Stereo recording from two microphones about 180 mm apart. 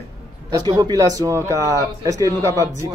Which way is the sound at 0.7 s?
20° right (ahead or behind).